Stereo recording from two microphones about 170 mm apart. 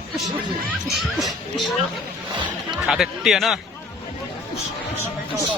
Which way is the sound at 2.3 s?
25° right (ahead or behind).